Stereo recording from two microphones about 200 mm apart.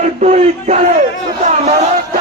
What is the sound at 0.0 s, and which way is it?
Battle cry, 35° right (ahead or behind).